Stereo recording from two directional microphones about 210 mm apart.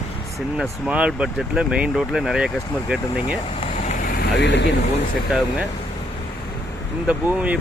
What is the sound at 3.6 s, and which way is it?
Vehicle, 35° left (ahead or behind).